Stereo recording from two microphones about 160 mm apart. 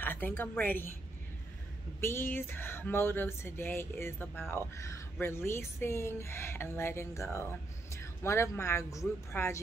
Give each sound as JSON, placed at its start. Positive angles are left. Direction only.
{"t": 0.0, "sound": "speech", "side_deg": 10}
{"t": 2.0, "sound": "speech", "side_deg": 15}